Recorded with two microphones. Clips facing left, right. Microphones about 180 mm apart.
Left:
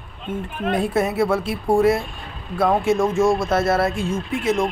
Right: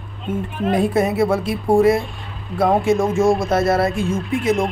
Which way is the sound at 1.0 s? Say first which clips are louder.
Right 1 dB; centre (ahead or behind).